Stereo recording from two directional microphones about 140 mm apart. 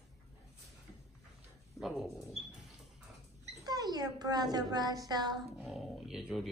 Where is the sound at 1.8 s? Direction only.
Centre (ahead or behind).